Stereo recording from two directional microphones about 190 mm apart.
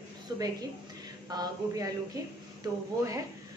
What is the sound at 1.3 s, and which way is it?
Speech, 20° right (ahead or behind).